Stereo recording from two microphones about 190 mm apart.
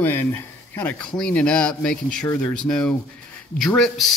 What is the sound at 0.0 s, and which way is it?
Speech, 10° left (ahead or behind).